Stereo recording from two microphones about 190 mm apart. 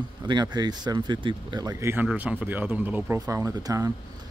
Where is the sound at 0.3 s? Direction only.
25° right (ahead or behind).